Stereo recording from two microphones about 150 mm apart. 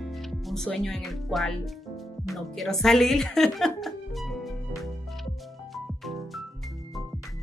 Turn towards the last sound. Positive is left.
turn(degrees=0)  # may be behind; listen again after turning